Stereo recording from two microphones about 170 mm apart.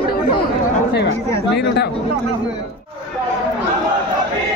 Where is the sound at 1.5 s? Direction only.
80° left.